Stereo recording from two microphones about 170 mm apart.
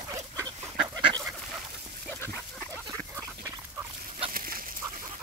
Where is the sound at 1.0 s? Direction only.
30° right (ahead or behind).